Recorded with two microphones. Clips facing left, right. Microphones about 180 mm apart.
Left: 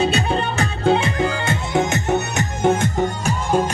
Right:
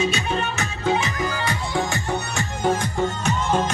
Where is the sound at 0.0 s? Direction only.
35° left (ahead or behind).